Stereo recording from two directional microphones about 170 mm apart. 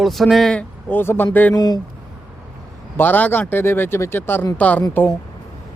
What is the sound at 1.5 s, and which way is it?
Speech, 25° left (ahead or behind).